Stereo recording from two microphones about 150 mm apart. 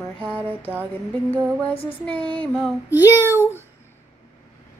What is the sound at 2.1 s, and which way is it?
Female singing, 35° right (ahead or behind).